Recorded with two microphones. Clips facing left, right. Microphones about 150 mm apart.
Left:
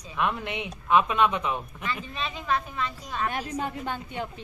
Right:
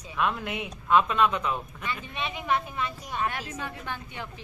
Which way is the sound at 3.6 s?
20° left (ahead or behind).